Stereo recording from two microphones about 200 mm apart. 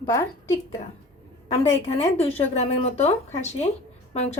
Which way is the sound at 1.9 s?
30° left (ahead or behind).